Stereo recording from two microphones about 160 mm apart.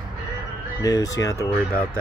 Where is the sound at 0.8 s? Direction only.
20° left (ahead or behind).